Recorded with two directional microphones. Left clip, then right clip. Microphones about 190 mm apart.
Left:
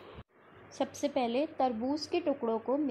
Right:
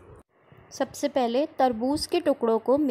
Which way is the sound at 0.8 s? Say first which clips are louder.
Right 6 dB; 25° right (ahead or behind).